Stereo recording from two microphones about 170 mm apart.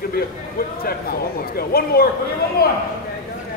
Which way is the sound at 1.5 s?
65° left (ahead or behind).